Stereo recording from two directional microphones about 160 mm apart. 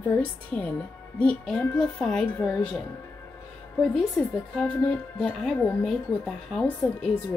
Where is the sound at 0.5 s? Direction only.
10° left (ahead or behind).